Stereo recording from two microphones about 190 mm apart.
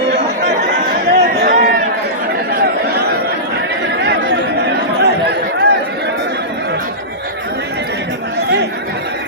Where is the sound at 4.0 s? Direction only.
60° right (ahead or behind).